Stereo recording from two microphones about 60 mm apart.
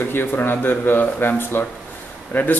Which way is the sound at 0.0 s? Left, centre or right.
Left.